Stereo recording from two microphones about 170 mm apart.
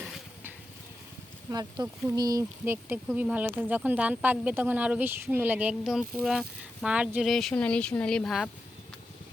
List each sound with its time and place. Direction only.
1.5 s speech: 20° right (ahead or behind)
3.1 s speech: 5° right (ahead or behind)